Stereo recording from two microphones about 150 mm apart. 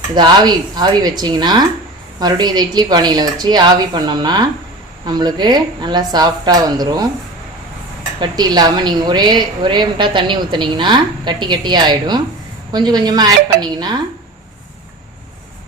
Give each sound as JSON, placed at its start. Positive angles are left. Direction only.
{"t": 0.1, "sound": "a woman's voice", "side_deg": -30}
{"t": 8.2, "sound": "a woman's voice", "side_deg": -25}